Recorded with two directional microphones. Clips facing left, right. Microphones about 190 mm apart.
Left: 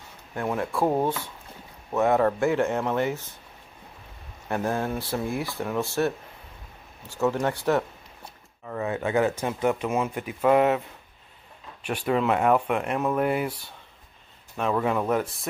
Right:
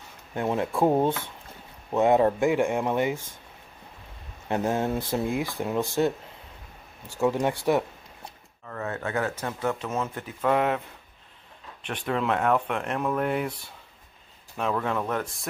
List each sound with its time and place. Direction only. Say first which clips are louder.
0.3 s speech: right 1 dB; 20° right (ahead or behind)
4.5 s speech: right 1 dB; 20° right (ahead or behind)
8.6 s speech: left 4 dB; 15° left (ahead or behind)
11.8 s speech: left 3 dB; 10° left (ahead or behind)
14.6 s speech: left 3 dB; 5° left (ahead or behind)